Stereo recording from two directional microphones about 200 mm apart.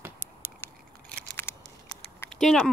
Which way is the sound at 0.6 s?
10° left (ahead or behind).